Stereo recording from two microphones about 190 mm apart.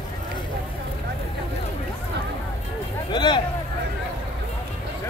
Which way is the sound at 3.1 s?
25° left (ahead or behind).